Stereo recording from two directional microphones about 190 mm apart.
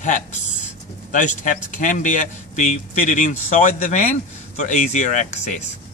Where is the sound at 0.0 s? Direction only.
40° left (ahead or behind).